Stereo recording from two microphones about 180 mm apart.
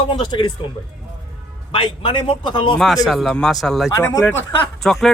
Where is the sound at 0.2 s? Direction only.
25° left (ahead or behind).